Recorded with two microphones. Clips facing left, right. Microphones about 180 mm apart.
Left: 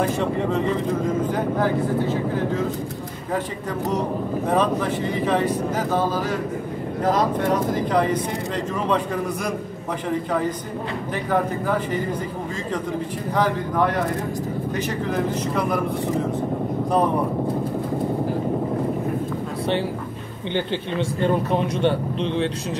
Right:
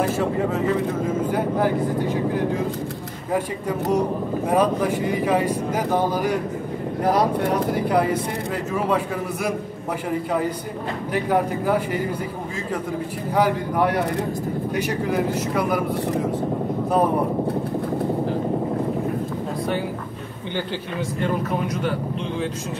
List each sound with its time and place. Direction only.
0.1 s speech: 5° right (ahead or behind)
4.5 s speech: 10° right (ahead or behind)
11.2 s speech: 10° right (ahead or behind)
13.3 s speech: 10° right (ahead or behind)
21.2 s speech: 30° left (ahead or behind)